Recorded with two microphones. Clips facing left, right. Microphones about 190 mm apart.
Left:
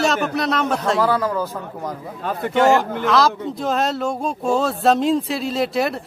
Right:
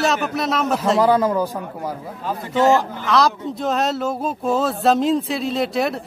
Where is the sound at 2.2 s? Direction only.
65° left (ahead or behind).